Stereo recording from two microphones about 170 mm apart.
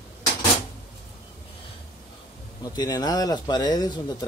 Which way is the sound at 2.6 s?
20° left (ahead or behind).